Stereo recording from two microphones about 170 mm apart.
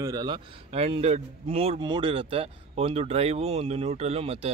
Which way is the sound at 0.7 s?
35° right (ahead or behind).